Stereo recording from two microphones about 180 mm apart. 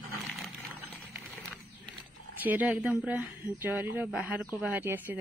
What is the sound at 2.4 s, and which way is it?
Speech, 10° right (ahead or behind).